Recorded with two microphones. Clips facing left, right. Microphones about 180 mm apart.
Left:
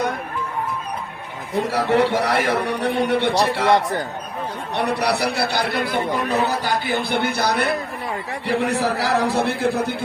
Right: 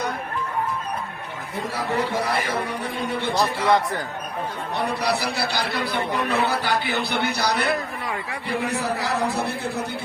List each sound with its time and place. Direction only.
1.5 s a man's voice: 85° left
4.7 s speech: 75° left (ahead or behind); by 7.7 s 55° left (ahead or behind)
8.4 s a man's voice: 90° left